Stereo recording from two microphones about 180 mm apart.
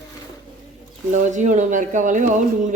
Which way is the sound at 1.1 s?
40° right (ahead or behind).